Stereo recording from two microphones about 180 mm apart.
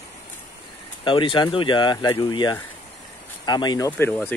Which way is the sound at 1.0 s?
30° left (ahead or behind).